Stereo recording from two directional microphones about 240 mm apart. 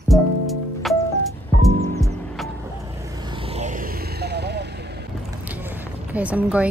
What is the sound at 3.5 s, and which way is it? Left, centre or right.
Vehicle, right.